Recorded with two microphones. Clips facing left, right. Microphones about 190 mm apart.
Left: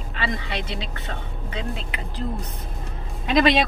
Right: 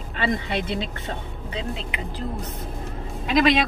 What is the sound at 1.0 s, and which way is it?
Speech, 30° right (ahead or behind).